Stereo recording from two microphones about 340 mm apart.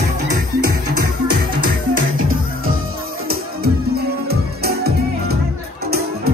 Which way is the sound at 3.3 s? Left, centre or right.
Right.